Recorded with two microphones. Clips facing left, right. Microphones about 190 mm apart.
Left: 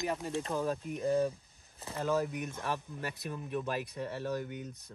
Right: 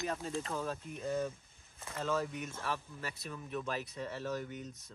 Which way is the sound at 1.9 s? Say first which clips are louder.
Left 4 dB; 15° left (ahead or behind).